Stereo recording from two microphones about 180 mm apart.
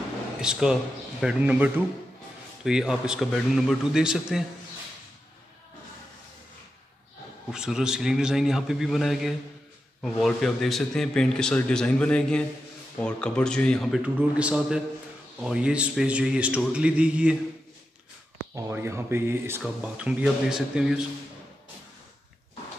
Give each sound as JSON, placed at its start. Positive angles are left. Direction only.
{"t": 0.4, "sound": "a man's voice", "side_deg": -5}
{"t": 7.5, "sound": "a man's voice", "side_deg": -5}
{"t": 18.5, "sound": "a man's voice", "side_deg": -15}